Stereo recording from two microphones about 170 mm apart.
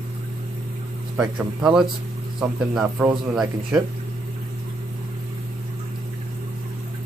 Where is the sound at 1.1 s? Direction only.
5° right (ahead or behind).